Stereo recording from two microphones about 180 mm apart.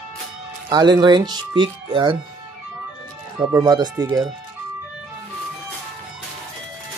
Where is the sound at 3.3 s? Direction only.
20° right (ahead or behind).